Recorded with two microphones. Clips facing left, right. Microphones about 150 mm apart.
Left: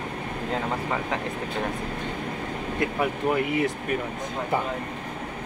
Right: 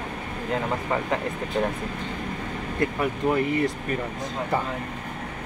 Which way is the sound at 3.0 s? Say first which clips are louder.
Right 1 dB; 5° left (ahead or behind).